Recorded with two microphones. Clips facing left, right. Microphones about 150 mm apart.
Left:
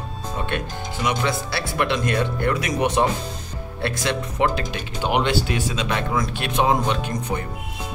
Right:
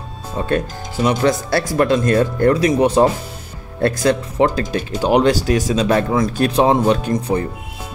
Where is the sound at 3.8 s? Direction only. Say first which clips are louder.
Right 9 dB; 45° right (ahead or behind).